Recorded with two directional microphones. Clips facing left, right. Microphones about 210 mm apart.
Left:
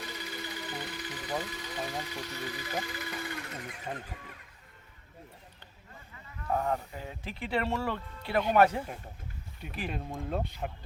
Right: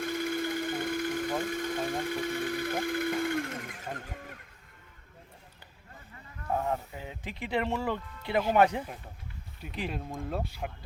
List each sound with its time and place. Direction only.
0.0 s a sound: 50° right (ahead or behind)
4.0 s speech: 50° right (ahead or behind)
6.5 s speech: centre (ahead or behind)
6.9 s speech: 15° right (ahead or behind)
9.9 s speech: centre (ahead or behind)